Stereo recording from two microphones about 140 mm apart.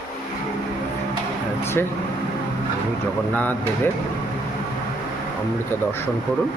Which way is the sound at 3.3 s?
15° left (ahead or behind).